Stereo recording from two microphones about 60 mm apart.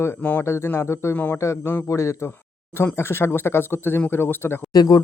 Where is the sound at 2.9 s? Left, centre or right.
Left.